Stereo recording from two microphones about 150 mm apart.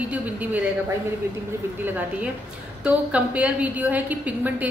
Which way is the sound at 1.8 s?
10° right (ahead or behind).